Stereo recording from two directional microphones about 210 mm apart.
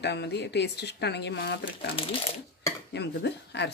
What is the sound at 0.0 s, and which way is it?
Speech, 55° left (ahead or behind).